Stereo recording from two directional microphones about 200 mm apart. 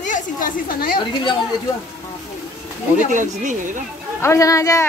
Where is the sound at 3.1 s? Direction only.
40° right (ahead or behind).